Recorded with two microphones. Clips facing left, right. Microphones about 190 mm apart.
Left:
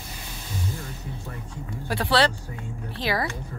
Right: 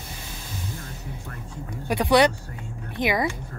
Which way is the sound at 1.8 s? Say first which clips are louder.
Right 4 dB; 15° right (ahead or behind).